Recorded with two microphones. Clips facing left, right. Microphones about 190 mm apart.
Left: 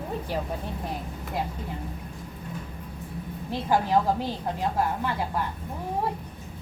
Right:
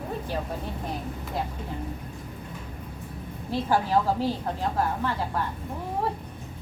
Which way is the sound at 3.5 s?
15° left (ahead or behind).